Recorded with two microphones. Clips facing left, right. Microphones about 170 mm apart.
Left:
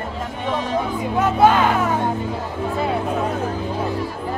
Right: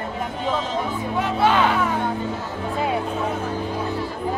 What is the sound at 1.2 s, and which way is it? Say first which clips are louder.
Music: left 4 dB; 45° left (ahead or behind).